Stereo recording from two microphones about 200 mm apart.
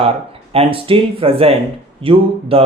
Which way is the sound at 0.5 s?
30° right (ahead or behind).